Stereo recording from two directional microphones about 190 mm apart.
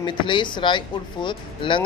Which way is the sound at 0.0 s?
25° left (ahead or behind).